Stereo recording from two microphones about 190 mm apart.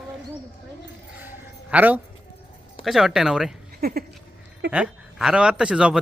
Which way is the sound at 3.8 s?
50° right (ahead or behind).